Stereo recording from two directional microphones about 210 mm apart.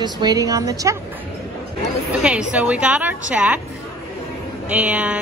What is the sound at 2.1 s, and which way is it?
Speech, 5° right (ahead or behind).